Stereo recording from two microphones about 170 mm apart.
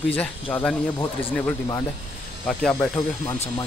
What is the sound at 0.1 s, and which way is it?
Speech, 10° left (ahead or behind).